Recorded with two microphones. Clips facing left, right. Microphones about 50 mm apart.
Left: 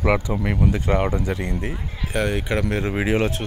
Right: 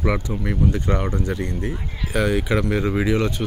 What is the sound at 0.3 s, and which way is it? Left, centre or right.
Speech, left.